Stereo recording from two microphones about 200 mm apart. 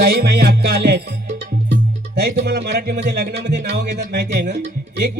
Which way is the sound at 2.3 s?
55° right (ahead or behind).